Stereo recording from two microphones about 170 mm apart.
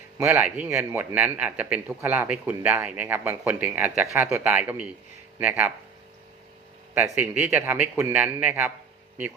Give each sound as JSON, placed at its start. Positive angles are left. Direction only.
{"t": 0.2, "sound": "a man's voice", "side_deg": -10}
{"t": 6.9, "sound": "a man's voice", "side_deg": -10}